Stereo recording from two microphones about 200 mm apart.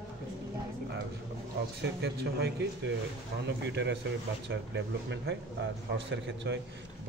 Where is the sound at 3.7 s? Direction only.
60° right (ahead or behind).